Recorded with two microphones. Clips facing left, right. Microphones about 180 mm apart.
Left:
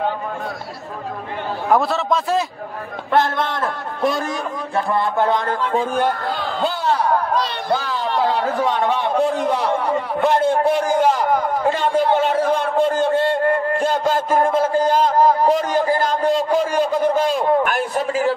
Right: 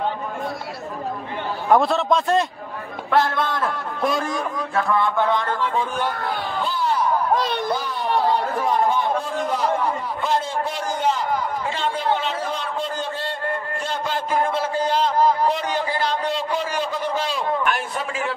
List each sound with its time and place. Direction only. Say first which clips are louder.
1.7 s a man's voice: right 1 dB; centre (ahead or behind)
3.1 s a man's voice: left 2 dB; 25° left (ahead or behind)
4.7 s speech: left 2 dB; 35° left (ahead or behind); by 6.1 s 50° left (ahead or behind)
6.3 s a sound: left 3 dB; 75° left (ahead or behind)
7.7 s a man's voice: left 2 dB; 80° left; by 18.3 s 40° left (ahead or behind)